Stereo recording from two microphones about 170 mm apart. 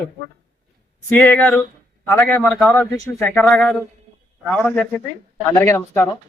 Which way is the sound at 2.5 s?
Centre (ahead or behind).